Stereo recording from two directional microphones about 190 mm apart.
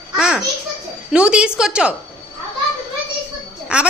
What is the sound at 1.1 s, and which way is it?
Speech, 5° right (ahead or behind).